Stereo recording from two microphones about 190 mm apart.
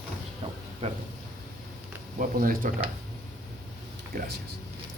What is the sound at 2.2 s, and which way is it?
Speech, 45° right (ahead or behind).